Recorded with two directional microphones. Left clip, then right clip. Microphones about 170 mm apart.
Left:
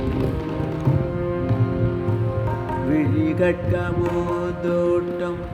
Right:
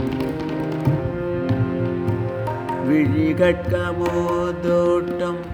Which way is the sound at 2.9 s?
25° right (ahead or behind).